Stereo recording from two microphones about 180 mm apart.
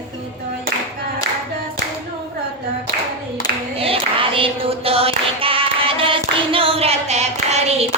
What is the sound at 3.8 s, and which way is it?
Clapping, 30° right (ahead or behind).